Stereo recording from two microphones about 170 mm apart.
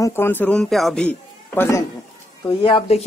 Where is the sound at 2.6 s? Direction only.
30° left (ahead or behind).